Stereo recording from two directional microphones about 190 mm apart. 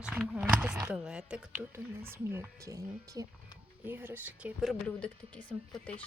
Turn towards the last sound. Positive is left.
turn(degrees=5)  # may be behind; listen again after turning